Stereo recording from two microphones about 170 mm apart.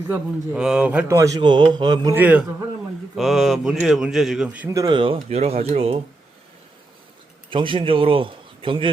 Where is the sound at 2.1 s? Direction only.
10° right (ahead or behind).